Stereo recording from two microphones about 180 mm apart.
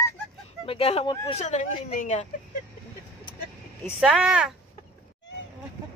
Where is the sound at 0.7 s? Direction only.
35° left (ahead or behind).